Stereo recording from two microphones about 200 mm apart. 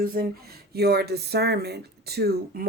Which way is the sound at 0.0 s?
45° right (ahead or behind).